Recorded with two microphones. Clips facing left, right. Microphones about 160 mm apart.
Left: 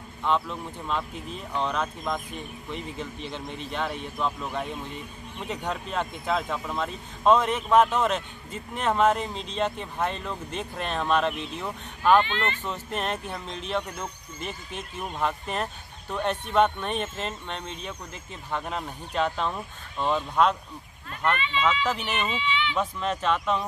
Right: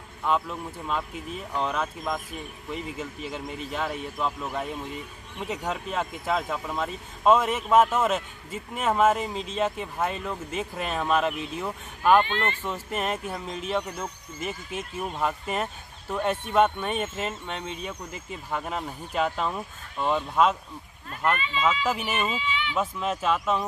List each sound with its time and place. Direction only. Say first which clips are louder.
0.2 s speech: even; 5° right (ahead or behind)
12.3 s speech: right 1 dB; 45° right (ahead or behind)
12.6 s speech: right 1 dB; 5° right (ahead or behind)
21.8 s speech: right 1 dB; 5° right (ahead or behind)
22.3 s speech: left 2 dB; 40° right (ahead or behind)
22.8 s speech: even; 5° right (ahead or behind)